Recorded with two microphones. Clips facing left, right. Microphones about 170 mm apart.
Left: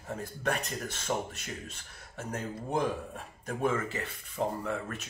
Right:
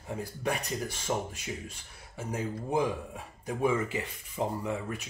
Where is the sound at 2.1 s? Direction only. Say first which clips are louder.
Right 2 dB; 10° right (ahead or behind).